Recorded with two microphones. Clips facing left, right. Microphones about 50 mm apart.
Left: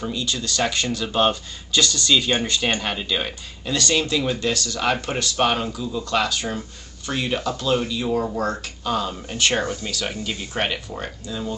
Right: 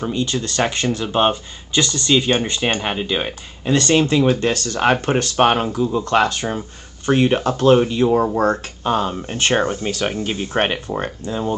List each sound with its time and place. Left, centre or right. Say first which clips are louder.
0.0 s speech: right 5 dB; right